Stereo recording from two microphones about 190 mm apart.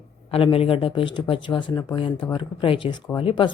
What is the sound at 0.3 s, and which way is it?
A woman's voice, 30° left (ahead or behind).